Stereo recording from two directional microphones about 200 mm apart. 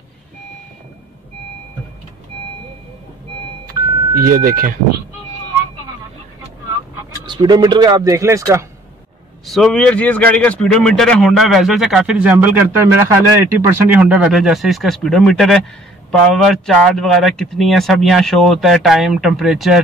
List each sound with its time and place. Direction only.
3.6 s vehicle: 45° right (ahead or behind)
7.2 s speech: 20° right (ahead or behind)
9.5 s speech: centre (ahead or behind)